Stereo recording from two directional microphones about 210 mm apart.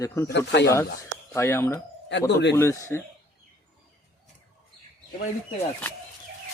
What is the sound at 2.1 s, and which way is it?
Speech, 55° left (ahead or behind).